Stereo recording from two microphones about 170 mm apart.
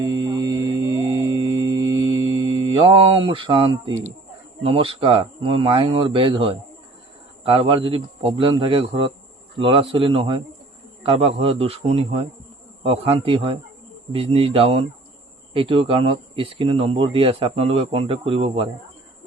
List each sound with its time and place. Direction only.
0.0 s mantra: 25° right (ahead or behind)
4.6 s speech: 35° right (ahead or behind)